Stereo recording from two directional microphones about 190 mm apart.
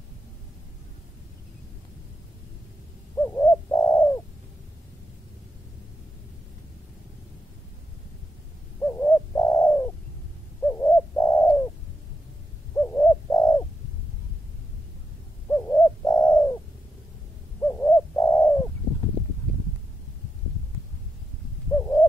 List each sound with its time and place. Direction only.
3.2 s bird: 15° left (ahead or behind)
8.8 s bird: 15° left (ahead or behind)
12.7 s bird: 10° left (ahead or behind)
15.4 s bird: 15° left (ahead or behind)
17.6 s bird: 15° left (ahead or behind)
21.7 s owl: 15° left (ahead or behind)